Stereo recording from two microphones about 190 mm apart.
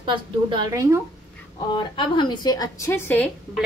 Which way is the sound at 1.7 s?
25° left (ahead or behind).